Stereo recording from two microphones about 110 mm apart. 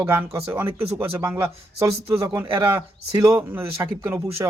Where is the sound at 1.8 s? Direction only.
30° right (ahead or behind).